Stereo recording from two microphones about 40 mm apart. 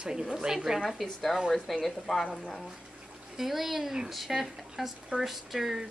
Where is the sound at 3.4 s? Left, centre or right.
Centre.